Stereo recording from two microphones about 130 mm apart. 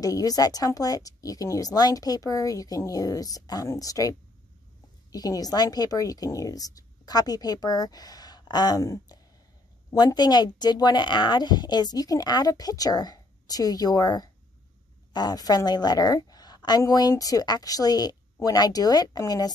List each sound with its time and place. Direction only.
0.0 s a woman's voice: 30° left (ahead or behind)